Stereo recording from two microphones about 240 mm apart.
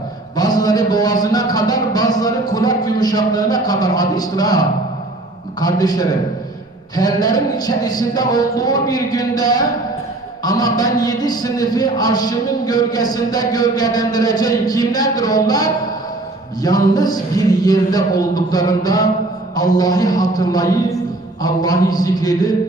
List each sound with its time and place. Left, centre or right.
0.3 s a man's voice: centre